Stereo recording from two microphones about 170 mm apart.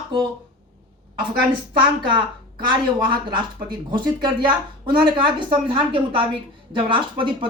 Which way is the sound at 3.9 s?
25° right (ahead or behind).